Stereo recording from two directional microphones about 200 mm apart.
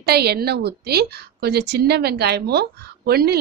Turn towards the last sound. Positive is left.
turn(degrees=-50)  # may be behind; listen again after turning